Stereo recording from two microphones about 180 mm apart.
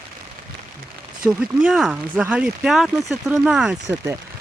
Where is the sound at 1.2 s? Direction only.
5° right (ahead or behind).